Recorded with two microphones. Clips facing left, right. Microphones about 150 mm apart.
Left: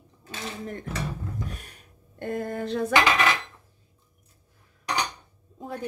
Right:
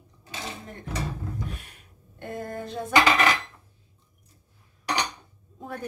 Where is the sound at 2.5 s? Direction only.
75° left (ahead or behind).